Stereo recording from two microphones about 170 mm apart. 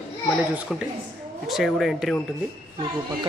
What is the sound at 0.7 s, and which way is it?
A man's voice, centre (ahead or behind).